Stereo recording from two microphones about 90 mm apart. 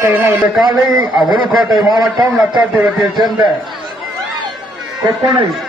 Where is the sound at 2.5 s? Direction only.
15° right (ahead or behind).